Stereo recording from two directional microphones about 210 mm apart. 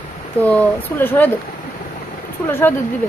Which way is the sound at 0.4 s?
5° left (ahead or behind).